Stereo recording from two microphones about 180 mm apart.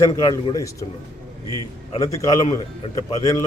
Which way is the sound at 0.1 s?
25° left (ahead or behind).